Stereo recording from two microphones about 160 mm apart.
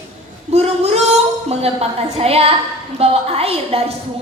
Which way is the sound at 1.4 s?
40° right (ahead or behind).